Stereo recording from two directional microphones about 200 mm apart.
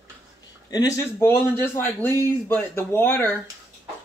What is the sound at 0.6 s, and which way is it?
Speech, 15° left (ahead or behind).